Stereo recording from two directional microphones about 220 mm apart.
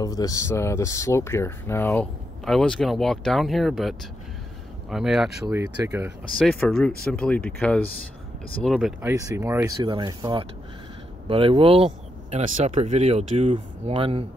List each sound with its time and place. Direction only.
0.0 s speech: 15° left (ahead or behind); by 6.1 s 10° right (ahead or behind)
6.3 s speech: 5° left (ahead or behind)
9.4 s speech: 10° right (ahead or behind)